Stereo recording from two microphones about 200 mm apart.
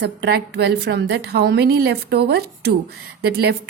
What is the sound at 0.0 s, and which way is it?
A woman's voice, 55° right (ahead or behind).